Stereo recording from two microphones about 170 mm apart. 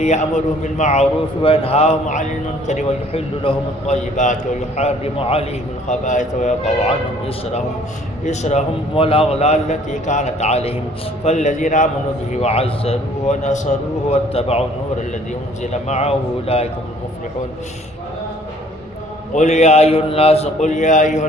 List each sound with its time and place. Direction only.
0.0 s a man's voice: 45° left (ahead or behind)
5.9 s a man's voice: 45° left (ahead or behind)
19.3 s a man's voice: 45° left (ahead or behind)